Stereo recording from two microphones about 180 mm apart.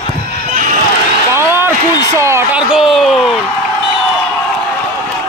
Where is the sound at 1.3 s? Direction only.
15° right (ahead or behind).